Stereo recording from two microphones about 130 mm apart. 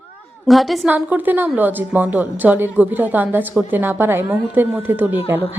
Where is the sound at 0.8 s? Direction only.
15° right (ahead or behind).